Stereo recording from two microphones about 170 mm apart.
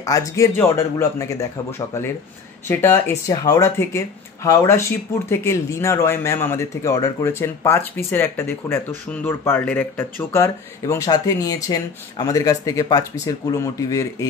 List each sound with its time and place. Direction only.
0.0 s speech: 20° left (ahead or behind)
2.7 s speech: 15° left (ahead or behind)